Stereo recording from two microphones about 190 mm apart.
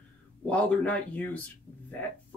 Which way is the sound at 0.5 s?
5° left (ahead or behind).